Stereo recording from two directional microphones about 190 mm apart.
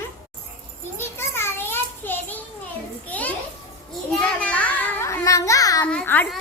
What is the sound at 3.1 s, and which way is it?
Children playing, 10° left (ahead or behind).